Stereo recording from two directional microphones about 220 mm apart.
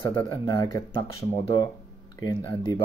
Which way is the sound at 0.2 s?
20° left (ahead or behind).